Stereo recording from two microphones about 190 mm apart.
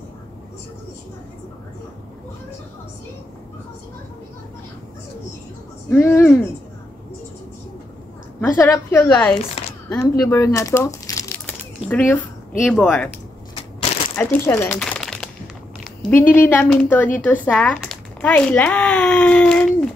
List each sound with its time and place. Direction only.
5.9 s speech: 10° left (ahead or behind)
8.4 s speech: 15° left (ahead or behind)
14.1 s speech: 10° left (ahead or behind)